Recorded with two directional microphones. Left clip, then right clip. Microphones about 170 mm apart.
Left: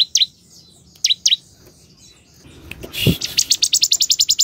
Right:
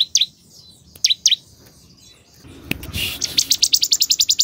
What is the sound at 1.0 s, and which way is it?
Bird, centre (ahead or behind).